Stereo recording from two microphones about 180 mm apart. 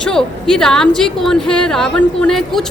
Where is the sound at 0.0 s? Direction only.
5° left (ahead or behind).